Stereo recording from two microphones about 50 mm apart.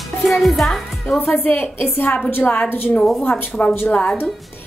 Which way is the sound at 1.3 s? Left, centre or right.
Left.